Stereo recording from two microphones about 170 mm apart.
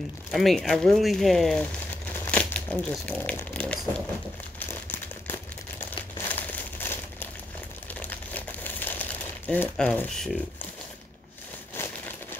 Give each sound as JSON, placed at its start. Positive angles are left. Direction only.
{"t": 0.3, "sound": "speech", "side_deg": 0}
{"t": 4.6, "sound": "crumpling", "side_deg": 10}
{"t": 9.5, "sound": "speech", "side_deg": 5}
{"t": 11.7, "sound": "a sound", "side_deg": 15}